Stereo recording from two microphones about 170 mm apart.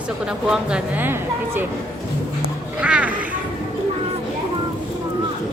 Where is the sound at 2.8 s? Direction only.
5° right (ahead or behind).